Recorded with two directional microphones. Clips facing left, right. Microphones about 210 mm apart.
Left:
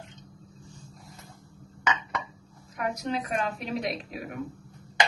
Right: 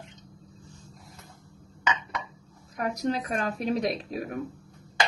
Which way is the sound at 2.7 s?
35° right (ahead or behind).